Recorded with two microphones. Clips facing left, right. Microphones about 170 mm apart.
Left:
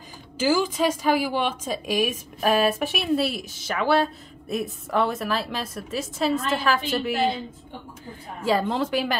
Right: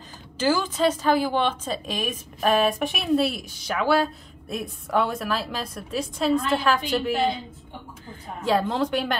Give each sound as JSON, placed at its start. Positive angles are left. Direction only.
{"t": 0.4, "sound": "a woman's voice", "side_deg": 10}
{"t": 8.5, "sound": "a woman's voice", "side_deg": 0}